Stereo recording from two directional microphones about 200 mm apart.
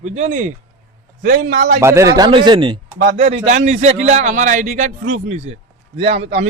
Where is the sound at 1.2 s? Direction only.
45° right (ahead or behind).